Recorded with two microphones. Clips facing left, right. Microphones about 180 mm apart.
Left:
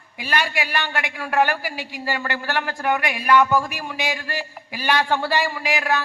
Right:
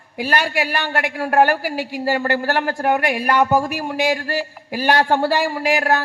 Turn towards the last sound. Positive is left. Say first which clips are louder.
# right 5 dB
turn(degrees=-40)  # may be behind; listen again after turning